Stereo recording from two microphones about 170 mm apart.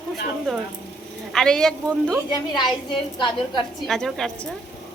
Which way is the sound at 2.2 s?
25° left (ahead or behind).